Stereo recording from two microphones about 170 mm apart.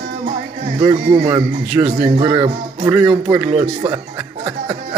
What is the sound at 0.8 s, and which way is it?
Speech, 20° right (ahead or behind).